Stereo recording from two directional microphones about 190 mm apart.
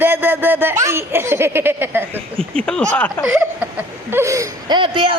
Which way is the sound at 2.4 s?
5° left (ahead or behind).